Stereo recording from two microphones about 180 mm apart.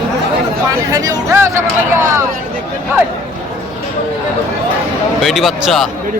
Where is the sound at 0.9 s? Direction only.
20° right (ahead or behind).